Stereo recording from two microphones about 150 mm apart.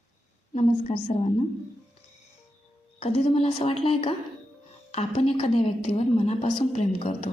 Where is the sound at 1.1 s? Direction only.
45° left (ahead or behind).